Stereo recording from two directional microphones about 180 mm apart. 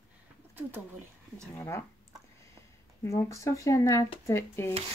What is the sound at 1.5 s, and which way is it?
Speech, 15° left (ahead or behind).